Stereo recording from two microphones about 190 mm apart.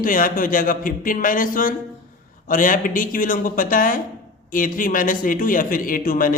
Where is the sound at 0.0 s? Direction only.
45° left (ahead or behind).